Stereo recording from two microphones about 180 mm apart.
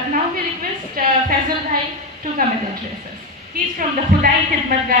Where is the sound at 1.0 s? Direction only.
55° right (ahead or behind).